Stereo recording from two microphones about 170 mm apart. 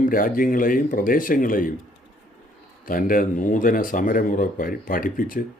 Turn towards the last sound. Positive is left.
turn(degrees=55)  # may be behind; listen again after turning